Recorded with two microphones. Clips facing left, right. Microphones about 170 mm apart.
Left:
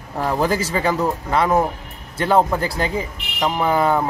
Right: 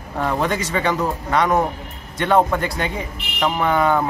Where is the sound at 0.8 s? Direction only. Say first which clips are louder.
Left 1 dB; 5° left (ahead or behind).